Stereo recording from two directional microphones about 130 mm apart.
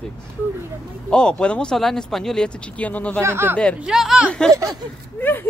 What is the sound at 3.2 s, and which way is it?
Speech, 20° right (ahead or behind).